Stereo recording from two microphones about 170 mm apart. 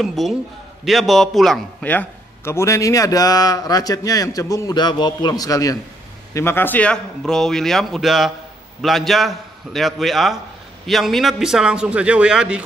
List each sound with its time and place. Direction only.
0.0 s a man's voice: centre (ahead or behind)